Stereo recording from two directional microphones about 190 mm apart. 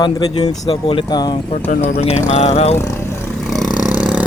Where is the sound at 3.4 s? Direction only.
Centre (ahead or behind).